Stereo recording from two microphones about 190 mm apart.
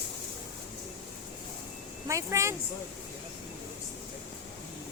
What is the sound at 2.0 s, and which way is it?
Speech, 15° right (ahead or behind).